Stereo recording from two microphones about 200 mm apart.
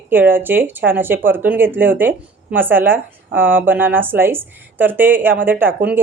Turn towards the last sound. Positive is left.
turn(degrees=-10)  # may be behind; listen again after turning